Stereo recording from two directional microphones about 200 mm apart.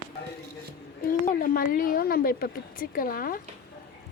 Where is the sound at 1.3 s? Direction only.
45° left (ahead or behind).